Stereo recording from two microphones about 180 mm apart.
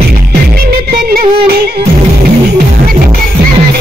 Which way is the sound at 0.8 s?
60° right (ahead or behind).